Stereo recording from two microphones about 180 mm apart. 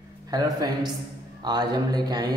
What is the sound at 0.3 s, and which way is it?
Speech, 20° right (ahead or behind).